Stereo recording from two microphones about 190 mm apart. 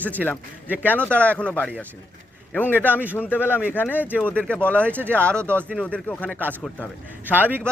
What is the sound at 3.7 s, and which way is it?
Speech, 10° left (ahead or behind).